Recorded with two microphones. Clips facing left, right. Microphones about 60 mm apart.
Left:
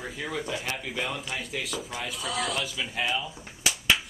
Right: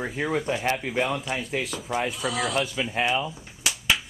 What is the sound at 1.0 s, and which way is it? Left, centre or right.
Speech, centre.